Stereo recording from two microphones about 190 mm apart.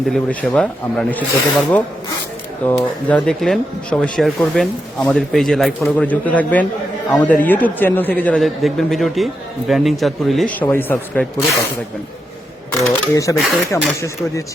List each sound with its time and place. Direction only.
0.1 s a man's voice: 5° left (ahead or behind)
12.8 s a man's voice: 15° left (ahead or behind)